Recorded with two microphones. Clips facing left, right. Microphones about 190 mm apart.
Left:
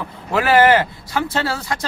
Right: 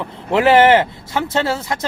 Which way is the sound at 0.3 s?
25° right (ahead or behind).